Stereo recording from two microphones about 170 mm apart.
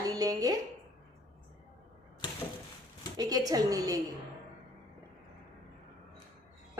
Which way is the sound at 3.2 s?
20° right (ahead or behind).